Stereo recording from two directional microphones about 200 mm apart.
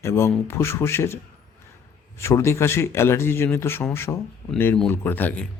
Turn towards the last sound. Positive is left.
turn(degrees=10)  # may be behind; listen again after turning